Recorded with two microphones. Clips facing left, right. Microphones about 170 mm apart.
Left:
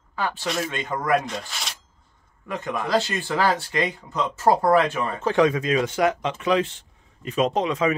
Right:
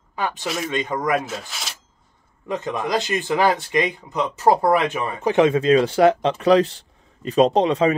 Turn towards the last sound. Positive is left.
turn(degrees=-30)  # may be behind; listen again after turning